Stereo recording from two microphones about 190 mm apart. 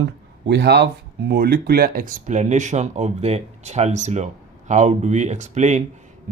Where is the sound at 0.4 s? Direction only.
60° right (ahead or behind).